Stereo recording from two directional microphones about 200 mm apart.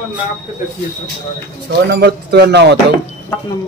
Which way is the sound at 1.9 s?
55° right (ahead or behind).